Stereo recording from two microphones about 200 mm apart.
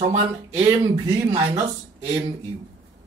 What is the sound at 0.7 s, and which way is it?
Speech, 15° right (ahead or behind).